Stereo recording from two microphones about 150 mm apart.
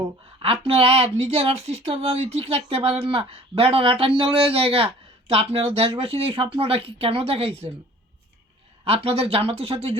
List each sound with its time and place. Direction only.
0.4 s speech: 40° right (ahead or behind)
8.8 s speech: 40° right (ahead or behind)